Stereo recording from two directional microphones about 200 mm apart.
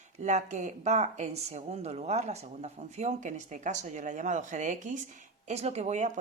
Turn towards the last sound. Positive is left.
turn(degrees=-35)  # may be behind; listen again after turning